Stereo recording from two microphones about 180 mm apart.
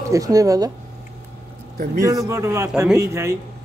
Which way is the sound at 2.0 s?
20° right (ahead or behind).